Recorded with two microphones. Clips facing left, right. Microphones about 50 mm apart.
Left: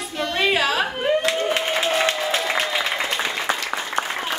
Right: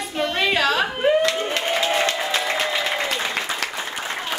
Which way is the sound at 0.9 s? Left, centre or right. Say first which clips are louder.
Right 3 dB; centre.